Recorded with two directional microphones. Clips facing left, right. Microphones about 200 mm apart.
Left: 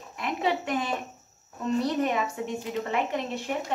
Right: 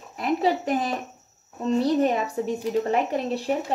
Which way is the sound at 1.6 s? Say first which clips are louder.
Right 5 dB; 30° right (ahead or behind).